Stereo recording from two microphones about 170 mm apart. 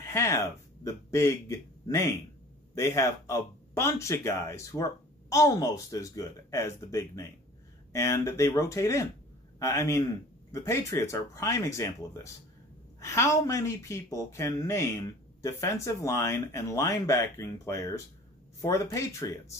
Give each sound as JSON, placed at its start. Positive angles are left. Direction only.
{"t": 0.0, "sound": "speech", "side_deg": 15}